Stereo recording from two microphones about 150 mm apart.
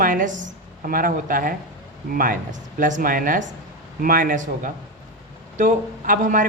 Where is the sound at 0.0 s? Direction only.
65° right (ahead or behind).